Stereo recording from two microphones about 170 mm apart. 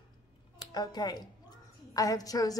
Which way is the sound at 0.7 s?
25° left (ahead or behind).